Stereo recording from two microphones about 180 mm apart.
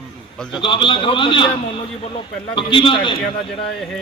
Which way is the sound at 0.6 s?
25° left (ahead or behind).